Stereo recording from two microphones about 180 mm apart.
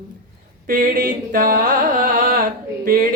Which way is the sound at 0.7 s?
50° right (ahead or behind).